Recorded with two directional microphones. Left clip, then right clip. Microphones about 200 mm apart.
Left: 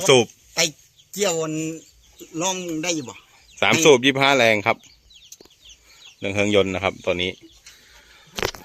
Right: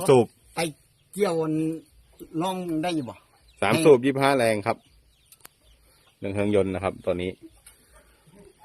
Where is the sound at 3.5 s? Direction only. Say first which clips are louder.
Left 3 dB; 5° left (ahead or behind).